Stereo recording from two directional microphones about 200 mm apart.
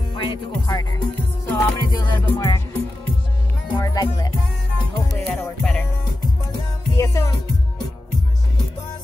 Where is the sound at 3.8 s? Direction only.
20° left (ahead or behind).